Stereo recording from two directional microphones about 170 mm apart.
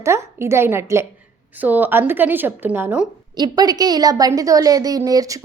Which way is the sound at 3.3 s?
25° right (ahead or behind).